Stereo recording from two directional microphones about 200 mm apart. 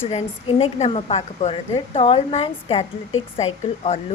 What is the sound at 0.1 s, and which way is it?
A woman's voice, 30° left (ahead or behind).